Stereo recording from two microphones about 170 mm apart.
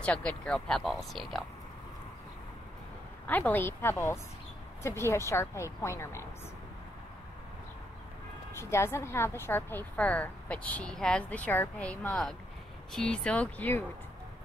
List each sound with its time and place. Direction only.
0.0 s speech: 5° left (ahead or behind)
3.3 s a woman's voice: 10° left (ahead or behind)
8.5 s a woman's voice: 15° left (ahead or behind)